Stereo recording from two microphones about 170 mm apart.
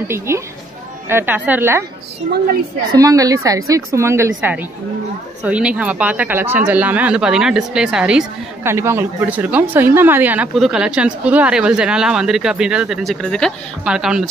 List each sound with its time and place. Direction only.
0.3 s a woman's voice: 15° right (ahead or behind)
2.9 s a woman's voice: 20° right (ahead or behind)
5.4 s a woman's voice: 5° right (ahead or behind)